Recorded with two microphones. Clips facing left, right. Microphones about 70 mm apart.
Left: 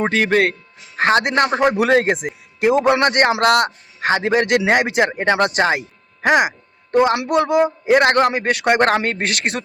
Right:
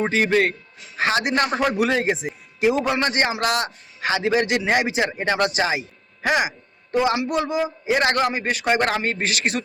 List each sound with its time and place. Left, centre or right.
0.0 s a man's voice: left
1.5 s speech: left
1.8 s a man's voice: left